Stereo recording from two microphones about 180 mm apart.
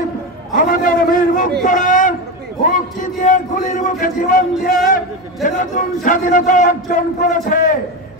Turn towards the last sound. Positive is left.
turn(degrees=45)  # may be behind; listen again after turning